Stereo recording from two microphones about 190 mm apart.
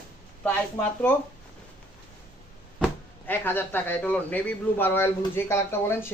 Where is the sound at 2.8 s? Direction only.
10° left (ahead or behind).